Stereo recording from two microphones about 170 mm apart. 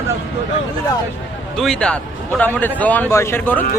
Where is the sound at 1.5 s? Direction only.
5° left (ahead or behind).